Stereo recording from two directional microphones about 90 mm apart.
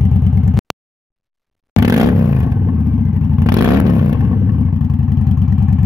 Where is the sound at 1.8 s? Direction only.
40° right (ahead or behind).